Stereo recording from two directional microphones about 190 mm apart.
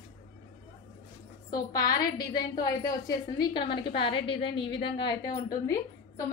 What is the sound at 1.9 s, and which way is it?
A woman's voice, 20° left (ahead or behind).